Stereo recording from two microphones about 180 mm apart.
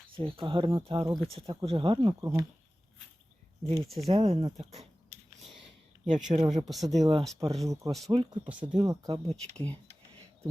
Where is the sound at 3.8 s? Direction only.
Centre (ahead or behind).